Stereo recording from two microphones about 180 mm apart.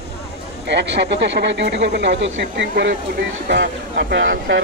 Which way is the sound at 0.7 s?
75° right (ahead or behind).